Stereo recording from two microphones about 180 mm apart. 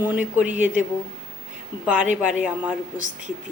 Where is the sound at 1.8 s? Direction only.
5° right (ahead or behind).